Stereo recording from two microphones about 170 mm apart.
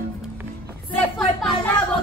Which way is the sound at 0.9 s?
5° left (ahead or behind).